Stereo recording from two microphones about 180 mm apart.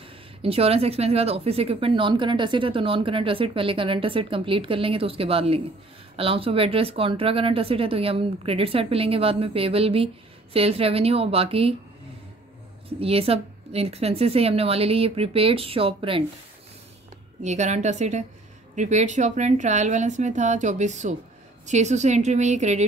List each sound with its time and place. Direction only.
0.0 s speech: 30° right (ahead or behind)
13.0 s speech: 30° right (ahead or behind)
17.4 s speech: 40° right (ahead or behind)